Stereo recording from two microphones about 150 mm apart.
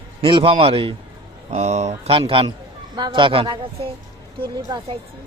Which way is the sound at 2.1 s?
35° right (ahead or behind).